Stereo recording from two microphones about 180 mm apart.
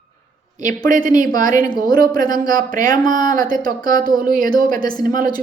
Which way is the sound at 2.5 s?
50° right (ahead or behind).